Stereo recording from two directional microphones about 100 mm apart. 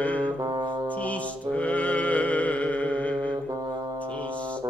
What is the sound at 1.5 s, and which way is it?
Music, 15° left (ahead or behind).